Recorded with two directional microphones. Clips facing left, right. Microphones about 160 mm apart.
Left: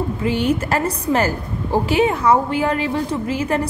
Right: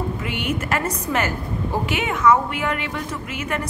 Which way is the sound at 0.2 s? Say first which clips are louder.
Left 7 dB; 30° left (ahead or behind).